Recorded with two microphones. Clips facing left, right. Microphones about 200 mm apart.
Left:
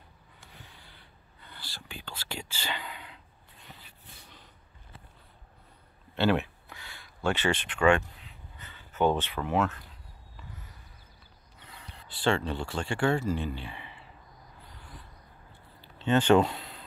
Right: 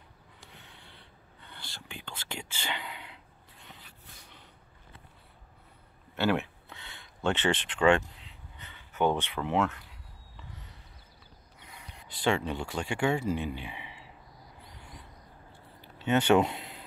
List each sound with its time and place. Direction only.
0.5 s a sound: 20° right (ahead or behind)
1.5 s speech: 20° right (ahead or behind)
6.4 s a sound: 25° right (ahead or behind)
9.3 s speech: 20° right (ahead or behind)
11.6 s speech: 15° right (ahead or behind)
16.0 s speech: 10° right (ahead or behind)